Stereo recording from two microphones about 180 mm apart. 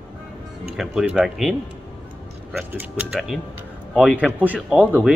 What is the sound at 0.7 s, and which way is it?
Speech, 5° right (ahead or behind).